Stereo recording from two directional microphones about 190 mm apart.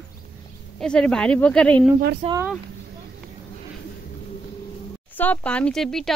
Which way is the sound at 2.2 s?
35° right (ahead or behind).